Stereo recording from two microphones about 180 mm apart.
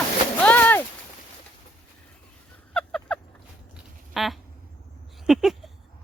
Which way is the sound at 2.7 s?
5° left (ahead or behind).